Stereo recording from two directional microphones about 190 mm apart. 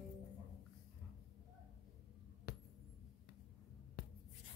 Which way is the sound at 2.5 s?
50° left (ahead or behind).